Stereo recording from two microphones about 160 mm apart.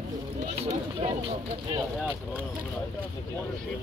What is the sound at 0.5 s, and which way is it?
Speech, 45° right (ahead or behind).